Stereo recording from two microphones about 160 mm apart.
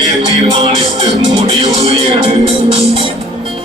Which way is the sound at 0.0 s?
30° right (ahead or behind).